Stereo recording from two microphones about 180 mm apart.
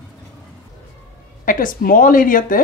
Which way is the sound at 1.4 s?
50° left (ahead or behind).